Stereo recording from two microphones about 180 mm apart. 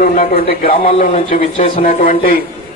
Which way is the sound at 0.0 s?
50° left (ahead or behind).